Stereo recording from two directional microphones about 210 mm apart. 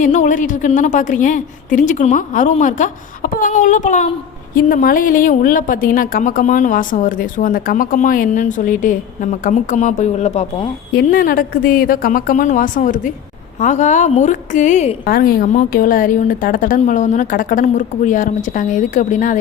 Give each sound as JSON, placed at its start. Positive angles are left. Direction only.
{"t": 0.0, "sound": "a woman's voice", "side_deg": 35}
{"t": 11.0, "sound": "a woman's voice", "side_deg": 40}